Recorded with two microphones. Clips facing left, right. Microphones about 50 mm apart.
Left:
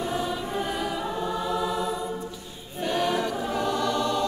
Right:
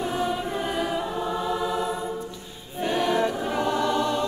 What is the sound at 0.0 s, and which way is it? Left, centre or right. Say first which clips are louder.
Choir: right 2 dB; centre.